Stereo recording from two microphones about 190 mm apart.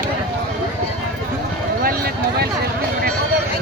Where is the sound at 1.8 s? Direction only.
55° right (ahead or behind).